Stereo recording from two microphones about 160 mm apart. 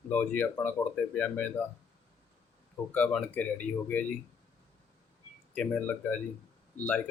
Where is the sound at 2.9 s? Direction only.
5° left (ahead or behind).